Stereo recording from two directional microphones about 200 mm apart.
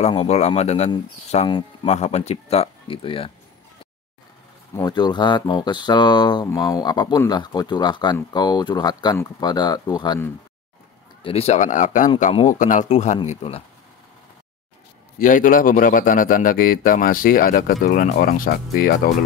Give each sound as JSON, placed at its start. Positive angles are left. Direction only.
{"t": 0.0, "sound": "speech", "side_deg": 30}
{"t": 4.7, "sound": "speech", "side_deg": 20}
{"t": 11.2, "sound": "speech", "side_deg": 30}
{"t": 15.1, "sound": "a man's voice", "side_deg": 40}